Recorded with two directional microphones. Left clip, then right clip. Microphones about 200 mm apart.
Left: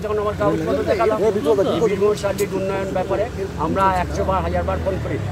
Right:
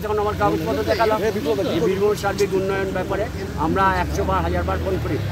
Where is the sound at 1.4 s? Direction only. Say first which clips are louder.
Left 4 dB; 25° left (ahead or behind).